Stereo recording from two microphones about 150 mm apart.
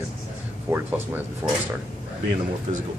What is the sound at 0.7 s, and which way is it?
Speech, 20° right (ahead or behind).